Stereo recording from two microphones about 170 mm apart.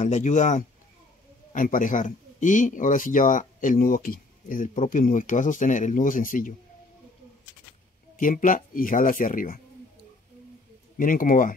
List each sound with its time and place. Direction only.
0.0 s speech: 45° left (ahead or behind)
8.2 s speech: 50° left (ahead or behind)
11.0 s speech: 55° left (ahead or behind)